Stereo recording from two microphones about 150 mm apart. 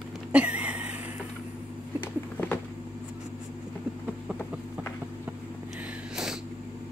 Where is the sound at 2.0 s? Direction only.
15° left (ahead or behind).